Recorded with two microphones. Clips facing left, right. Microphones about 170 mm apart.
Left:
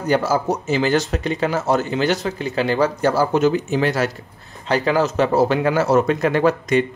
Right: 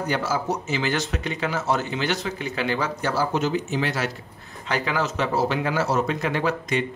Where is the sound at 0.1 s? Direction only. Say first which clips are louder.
Left 9 dB; 40° left (ahead or behind).